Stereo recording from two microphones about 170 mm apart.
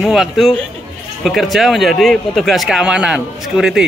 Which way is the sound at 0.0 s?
Centre (ahead or behind).